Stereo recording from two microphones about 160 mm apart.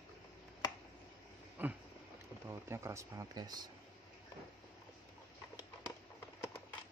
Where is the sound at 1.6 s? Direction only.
10° right (ahead or behind).